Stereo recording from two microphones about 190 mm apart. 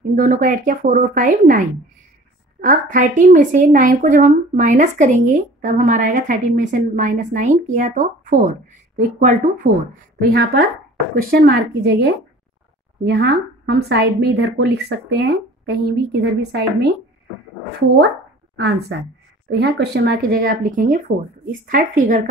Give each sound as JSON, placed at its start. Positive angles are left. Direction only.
{"t": 0.1, "sound": "a woman's voice", "side_deg": -45}
{"t": 19.6, "sound": "speech", "side_deg": -55}